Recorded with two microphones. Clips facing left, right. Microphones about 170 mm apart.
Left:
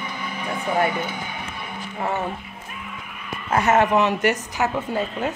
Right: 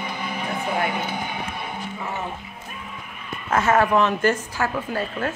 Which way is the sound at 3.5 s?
20° left (ahead or behind).